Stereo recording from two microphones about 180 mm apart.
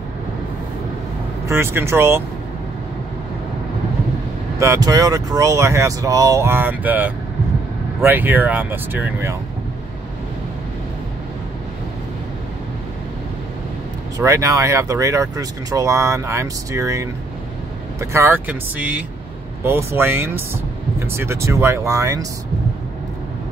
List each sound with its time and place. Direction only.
1.5 s speech: 15° right (ahead or behind)
4.6 s speech: 20° right (ahead or behind)
14.1 s speech: 15° right (ahead or behind)
18.1 s speech: 10° right (ahead or behind)